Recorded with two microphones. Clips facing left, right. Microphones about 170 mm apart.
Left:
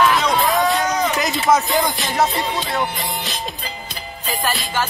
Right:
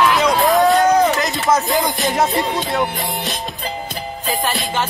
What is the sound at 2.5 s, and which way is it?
Music, centre (ahead or behind).